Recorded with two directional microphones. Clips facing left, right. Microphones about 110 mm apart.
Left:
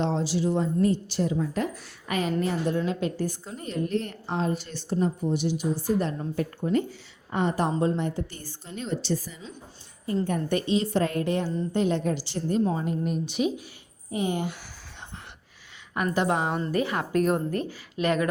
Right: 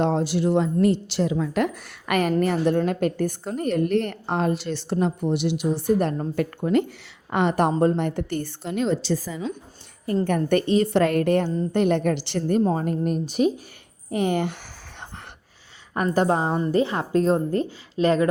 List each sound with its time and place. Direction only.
0.0 s a woman's voice: 55° right (ahead or behind)
6.3 s a woman's voice: 75° right (ahead or behind)
7.7 s a woman's voice: 50° right (ahead or behind); by 9.5 s 90° right
10.2 s a woman's voice: 60° right (ahead or behind); by 13.5 s 40° right (ahead or behind)
14.1 s a woman's voice: 65° right (ahead or behind)
16.1 s a woman's voice: 35° right (ahead or behind)
16.6 s a woman's voice: 25° right (ahead or behind)